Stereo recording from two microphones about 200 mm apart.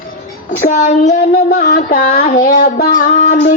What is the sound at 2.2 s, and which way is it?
Child singing, 45° left (ahead or behind).